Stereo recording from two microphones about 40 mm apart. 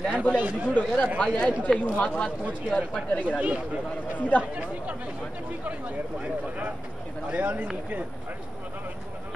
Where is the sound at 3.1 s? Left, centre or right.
Left.